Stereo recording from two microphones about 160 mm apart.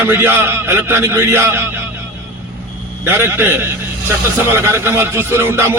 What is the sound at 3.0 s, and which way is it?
A man's voice, 15° right (ahead or behind).